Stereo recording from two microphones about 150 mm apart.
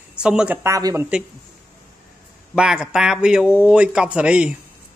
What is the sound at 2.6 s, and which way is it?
A man's voice, 5° right (ahead or behind).